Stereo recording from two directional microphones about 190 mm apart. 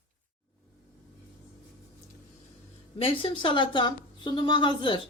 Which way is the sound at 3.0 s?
25° left (ahead or behind).